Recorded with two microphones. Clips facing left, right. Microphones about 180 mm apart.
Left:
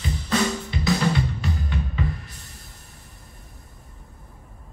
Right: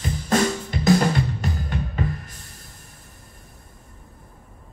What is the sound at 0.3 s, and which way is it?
Drum, 45° right (ahead or behind).